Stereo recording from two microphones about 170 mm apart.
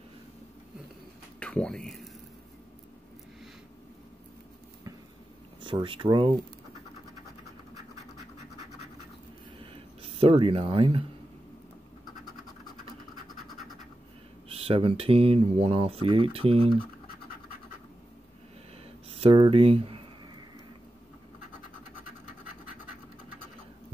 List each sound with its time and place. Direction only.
1.4 s speech: 5° left (ahead or behind)
5.6 s speech: 30° right (ahead or behind)
9.6 s a sound: 35° right (ahead or behind)
14.5 s speech: 35° right (ahead or behind)
19.0 s speech: 35° right (ahead or behind)